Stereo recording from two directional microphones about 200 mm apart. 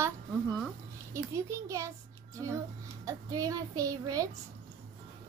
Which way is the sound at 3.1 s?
15° right (ahead or behind).